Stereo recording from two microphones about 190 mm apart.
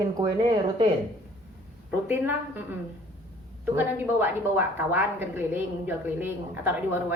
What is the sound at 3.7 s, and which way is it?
A woman's voice, 10° right (ahead or behind).